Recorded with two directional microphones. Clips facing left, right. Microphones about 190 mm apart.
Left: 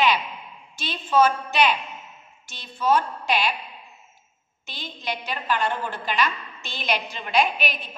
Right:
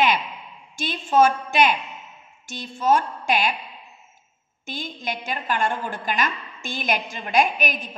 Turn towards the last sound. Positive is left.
turn(degrees=-45)  # may be behind; listen again after turning